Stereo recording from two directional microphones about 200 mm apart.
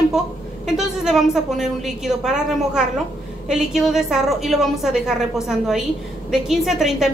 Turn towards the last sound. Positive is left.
turn(degrees=0)  # may be behind; listen again after turning